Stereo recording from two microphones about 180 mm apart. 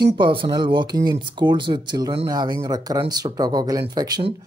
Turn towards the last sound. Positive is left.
turn(degrees=-20)  # may be behind; listen again after turning